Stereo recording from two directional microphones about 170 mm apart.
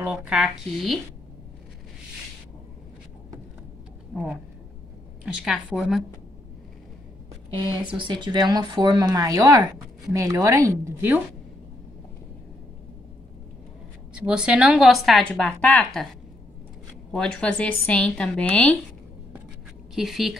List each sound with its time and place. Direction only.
0.0 s a woman's voice: 5° right (ahead or behind)
5.2 s a woman's voice: 5° right (ahead or behind)
7.9 s speech: 30° right (ahead or behind)
14.2 s a woman's voice: 5° right (ahead or behind)
17.1 s a woman's voice: 5° left (ahead or behind)
20.0 s a woman's voice: centre (ahead or behind)